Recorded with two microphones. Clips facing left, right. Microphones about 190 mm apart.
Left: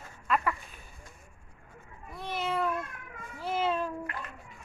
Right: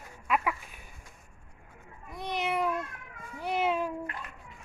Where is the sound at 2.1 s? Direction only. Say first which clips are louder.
Right 1 dB; 15° right (ahead or behind).